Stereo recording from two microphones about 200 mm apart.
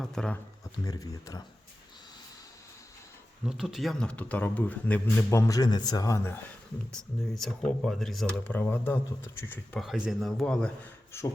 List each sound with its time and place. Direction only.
0.0 s speech: 5° left (ahead or behind)
0.6 s speech: 20° left (ahead or behind)
3.4 s a man's voice: 5° right (ahead or behind); by 6.4 s 15° left (ahead or behind)
6.9 s speech: centre (ahead or behind)
9.8 s a man's voice: centre (ahead or behind)